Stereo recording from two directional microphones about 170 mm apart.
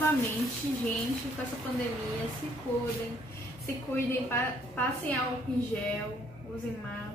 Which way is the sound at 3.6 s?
10° left (ahead or behind).